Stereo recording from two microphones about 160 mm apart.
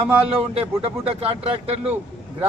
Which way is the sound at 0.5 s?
40° right (ahead or behind).